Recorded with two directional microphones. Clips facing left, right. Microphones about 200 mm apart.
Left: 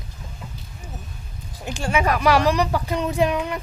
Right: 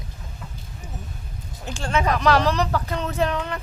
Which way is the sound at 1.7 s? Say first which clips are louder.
Left 1 dB; 15° left (ahead or behind).